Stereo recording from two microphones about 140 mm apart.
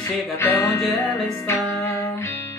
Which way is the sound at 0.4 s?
20° left (ahead or behind).